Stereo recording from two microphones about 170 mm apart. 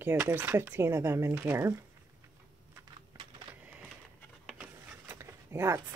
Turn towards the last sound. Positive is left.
turn(degrees=-15)  # may be behind; listen again after turning